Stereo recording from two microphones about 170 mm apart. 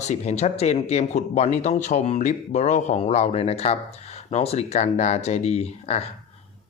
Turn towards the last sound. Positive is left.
turn(degrees=40)  # may be behind; listen again after turning